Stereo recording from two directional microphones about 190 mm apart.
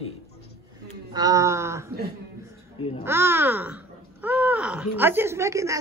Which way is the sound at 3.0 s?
10° right (ahead or behind).